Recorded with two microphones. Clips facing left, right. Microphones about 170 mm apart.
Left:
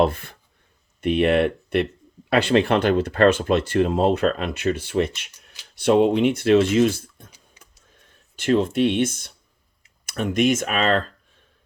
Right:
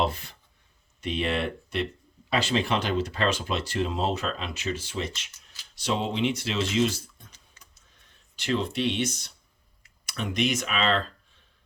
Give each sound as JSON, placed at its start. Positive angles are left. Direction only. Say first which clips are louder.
{"t": 0.0, "sound": "speech", "louder": "left 8 dB", "side_deg": 55}
{"t": 7.3, "sound": "a sound", "louder": "left 4 dB", "side_deg": 10}
{"t": 8.4, "sound": "speech", "louder": "left 8 dB", "side_deg": 50}